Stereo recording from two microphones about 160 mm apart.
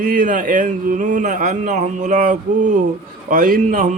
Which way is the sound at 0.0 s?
60° right (ahead or behind).